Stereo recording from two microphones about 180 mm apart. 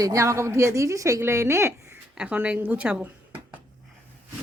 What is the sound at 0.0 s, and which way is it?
A woman's voice, 15° right (ahead or behind).